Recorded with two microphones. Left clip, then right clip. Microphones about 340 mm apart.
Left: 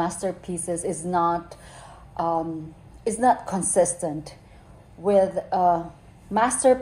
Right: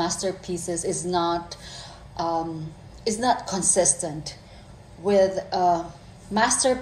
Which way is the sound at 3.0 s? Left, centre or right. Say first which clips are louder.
Left 2 dB; left.